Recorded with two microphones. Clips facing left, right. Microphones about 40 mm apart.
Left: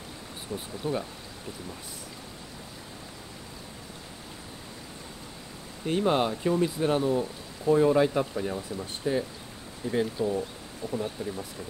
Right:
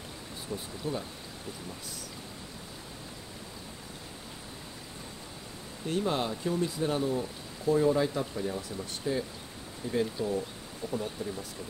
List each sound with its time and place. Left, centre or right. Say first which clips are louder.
0.5 s speech: left 2 dB; left
5.9 s speech: left 5 dB; left; by 10.4 s centre
10.8 s speech: left 1 dB; centre
11.2 s speech: left 2 dB; left